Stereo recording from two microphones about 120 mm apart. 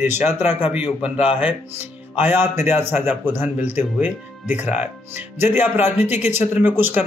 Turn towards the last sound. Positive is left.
turn(degrees=-15)  # may be behind; listen again after turning